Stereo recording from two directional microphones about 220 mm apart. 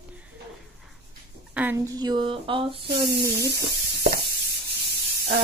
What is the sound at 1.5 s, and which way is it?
Speech, 10° right (ahead or behind).